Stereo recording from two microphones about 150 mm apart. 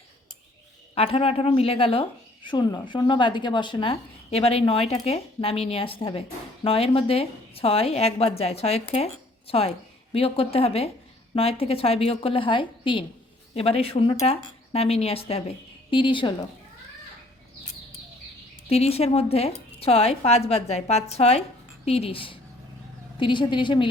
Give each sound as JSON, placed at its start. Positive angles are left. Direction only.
{"t": 0.9, "sound": "a woman's voice", "side_deg": 40}
{"t": 18.7, "sound": "a woman's voice", "side_deg": 45}